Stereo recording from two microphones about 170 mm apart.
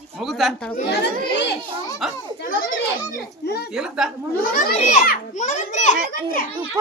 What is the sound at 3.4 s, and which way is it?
Speech, 70° left (ahead or behind).